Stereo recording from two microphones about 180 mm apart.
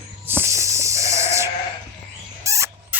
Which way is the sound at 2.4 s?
15° right (ahead or behind).